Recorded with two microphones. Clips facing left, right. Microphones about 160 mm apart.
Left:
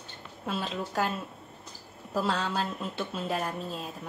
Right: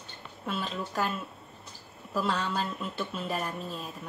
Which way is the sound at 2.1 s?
30° left (ahead or behind).